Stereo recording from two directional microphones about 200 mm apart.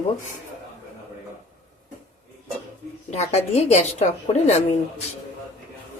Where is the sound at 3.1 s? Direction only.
30° left (ahead or behind).